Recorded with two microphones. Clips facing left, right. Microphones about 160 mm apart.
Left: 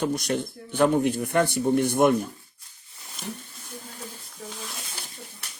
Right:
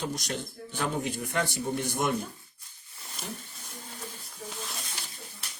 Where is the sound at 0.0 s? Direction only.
55° left (ahead or behind).